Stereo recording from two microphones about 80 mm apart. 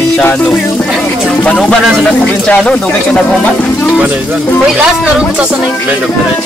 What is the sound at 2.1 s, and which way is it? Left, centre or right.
Speech, centre.